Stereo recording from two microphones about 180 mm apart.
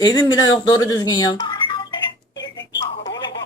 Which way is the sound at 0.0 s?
25° left (ahead or behind).